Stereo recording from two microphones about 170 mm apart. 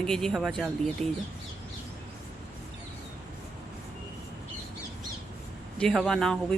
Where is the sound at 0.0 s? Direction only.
5° left (ahead or behind).